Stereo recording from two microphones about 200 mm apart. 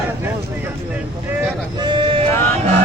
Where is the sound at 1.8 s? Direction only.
25° right (ahead or behind).